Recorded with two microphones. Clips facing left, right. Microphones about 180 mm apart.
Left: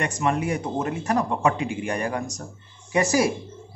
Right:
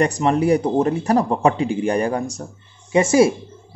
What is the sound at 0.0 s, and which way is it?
Speech, 35° right (ahead or behind).